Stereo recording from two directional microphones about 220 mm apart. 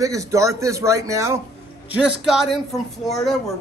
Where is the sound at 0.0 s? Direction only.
15° right (ahead or behind).